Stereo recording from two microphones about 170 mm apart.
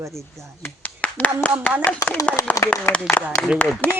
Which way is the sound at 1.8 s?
15° left (ahead or behind).